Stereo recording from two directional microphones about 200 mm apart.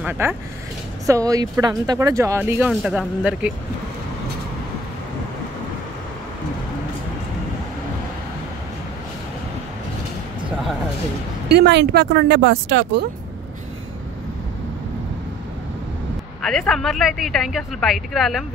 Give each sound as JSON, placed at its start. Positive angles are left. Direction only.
{"t": 0.0, "sound": "speech", "side_deg": -10}
{"t": 11.4, "sound": "speech", "side_deg": -55}
{"t": 16.4, "sound": "speech", "side_deg": 0}